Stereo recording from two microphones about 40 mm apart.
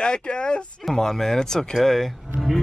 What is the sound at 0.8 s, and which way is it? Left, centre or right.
Speech, centre.